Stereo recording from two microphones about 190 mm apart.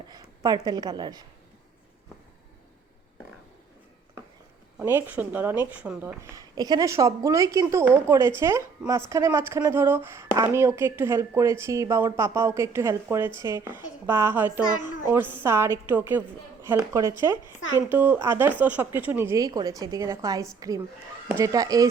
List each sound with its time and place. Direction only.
0.1 s a woman's voice: 20° right (ahead or behind)
4.8 s speech: 10° right (ahead or behind)